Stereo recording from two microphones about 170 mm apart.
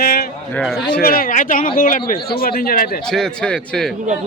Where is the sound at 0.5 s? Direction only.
Centre (ahead or behind).